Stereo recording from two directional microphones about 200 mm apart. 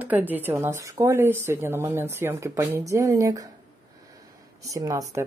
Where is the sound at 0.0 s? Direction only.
10° right (ahead or behind).